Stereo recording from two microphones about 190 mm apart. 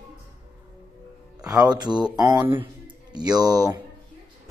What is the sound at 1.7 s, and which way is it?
Speech, 20° right (ahead or behind).